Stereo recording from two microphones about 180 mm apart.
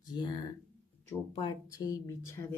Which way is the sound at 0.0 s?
25° left (ahead or behind).